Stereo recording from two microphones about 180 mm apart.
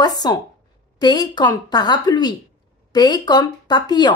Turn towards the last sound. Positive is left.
turn(degrees=25)  # may be behind; listen again after turning